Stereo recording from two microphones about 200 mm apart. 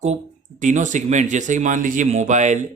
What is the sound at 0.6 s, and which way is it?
Speech, 40° right (ahead or behind).